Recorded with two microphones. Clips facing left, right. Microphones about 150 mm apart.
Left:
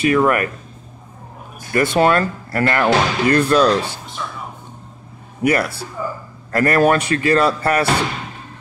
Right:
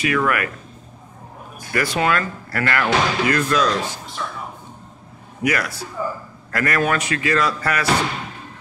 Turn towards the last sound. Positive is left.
turn(degrees=30)  # may be behind; listen again after turning